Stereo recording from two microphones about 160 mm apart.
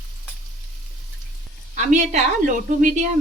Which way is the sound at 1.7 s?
50° right (ahead or behind).